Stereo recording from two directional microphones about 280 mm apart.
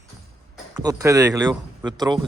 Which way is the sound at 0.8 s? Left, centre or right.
Centre.